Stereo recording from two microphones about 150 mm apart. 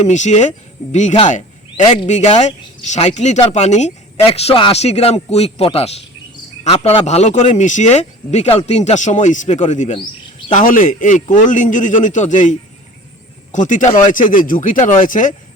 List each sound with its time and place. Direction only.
0.0 s speech: 50° left (ahead or behind)
10.5 s a man's voice: 65° left (ahead or behind)